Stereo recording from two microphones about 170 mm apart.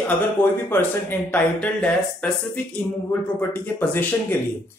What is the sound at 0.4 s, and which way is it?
Speech, 10° left (ahead or behind).